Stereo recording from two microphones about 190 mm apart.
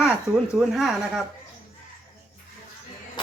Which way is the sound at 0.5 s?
Centre (ahead or behind).